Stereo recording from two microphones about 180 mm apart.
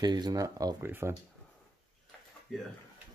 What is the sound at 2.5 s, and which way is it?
Speech, centre (ahead or behind).